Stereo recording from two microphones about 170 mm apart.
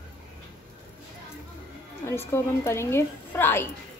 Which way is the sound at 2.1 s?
15° left (ahead or behind).